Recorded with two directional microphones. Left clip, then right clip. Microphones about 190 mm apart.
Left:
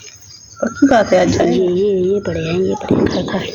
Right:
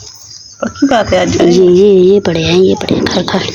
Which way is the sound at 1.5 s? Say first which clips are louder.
Right 9 dB; 65° right (ahead or behind).